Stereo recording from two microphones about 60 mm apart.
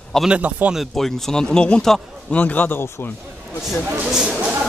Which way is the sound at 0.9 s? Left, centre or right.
Centre.